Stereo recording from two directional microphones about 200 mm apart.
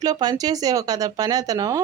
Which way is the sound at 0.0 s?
20° right (ahead or behind).